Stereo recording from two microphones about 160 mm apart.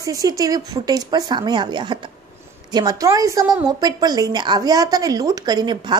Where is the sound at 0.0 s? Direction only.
20° right (ahead or behind).